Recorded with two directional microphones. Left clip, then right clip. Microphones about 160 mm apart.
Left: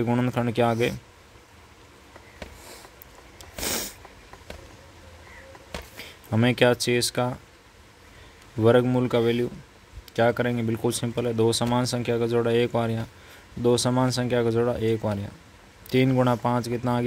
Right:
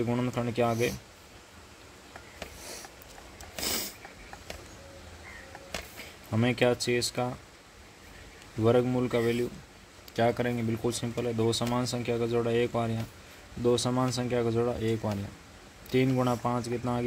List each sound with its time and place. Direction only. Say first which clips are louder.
0.0 s speech: left 5 dB; 45° left (ahead or behind)
3.6 s sniff: left 3 dB; 45° left (ahead or behind)
5.9 s speech: left 7 dB; 45° left (ahead or behind)
8.6 s speech: left 5 dB; 50° left (ahead or behind)
10.1 s speech: left 5 dB; 35° left (ahead or behind); by 17.0 s 50° left (ahead or behind)